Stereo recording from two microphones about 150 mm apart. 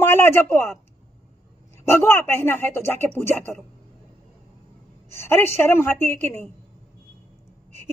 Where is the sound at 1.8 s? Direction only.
15° left (ahead or behind).